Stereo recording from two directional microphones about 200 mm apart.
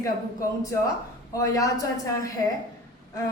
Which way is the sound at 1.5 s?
15° left (ahead or behind).